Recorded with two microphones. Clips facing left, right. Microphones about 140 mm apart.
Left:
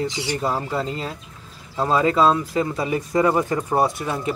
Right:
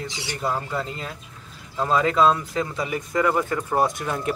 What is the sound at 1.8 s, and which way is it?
Speech, 10° left (ahead or behind).